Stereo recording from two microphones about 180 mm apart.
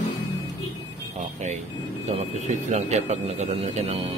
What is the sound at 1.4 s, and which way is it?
A man's voice, 40° right (ahead or behind).